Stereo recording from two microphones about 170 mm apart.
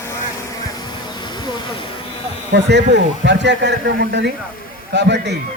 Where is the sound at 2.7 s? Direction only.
90° right.